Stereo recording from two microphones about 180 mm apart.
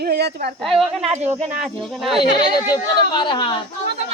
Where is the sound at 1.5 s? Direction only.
Centre (ahead or behind).